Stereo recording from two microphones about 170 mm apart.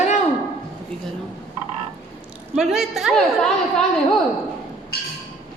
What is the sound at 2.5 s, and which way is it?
A woman's voice, centre (ahead or behind).